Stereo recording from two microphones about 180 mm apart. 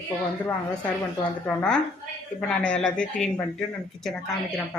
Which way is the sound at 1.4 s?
5° left (ahead or behind).